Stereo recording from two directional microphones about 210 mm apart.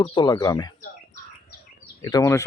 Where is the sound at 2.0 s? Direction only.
15° left (ahead or behind).